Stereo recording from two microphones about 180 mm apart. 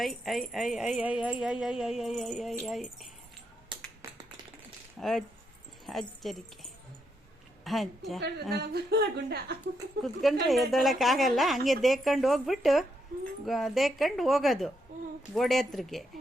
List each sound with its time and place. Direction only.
0.0 s speech: centre (ahead or behind)
4.0 s tap: 15° right (ahead or behind)
4.9 s speech: centre (ahead or behind)
8.5 s speech: 65° right (ahead or behind)
10.0 s speech: centre (ahead or behind)